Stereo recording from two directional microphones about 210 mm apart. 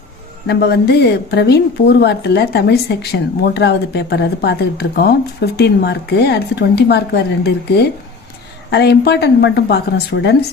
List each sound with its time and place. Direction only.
0.4 s a woman's voice: 50° left (ahead or behind)